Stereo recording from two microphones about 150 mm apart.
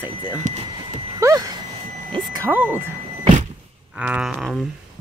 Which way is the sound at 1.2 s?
20° right (ahead or behind).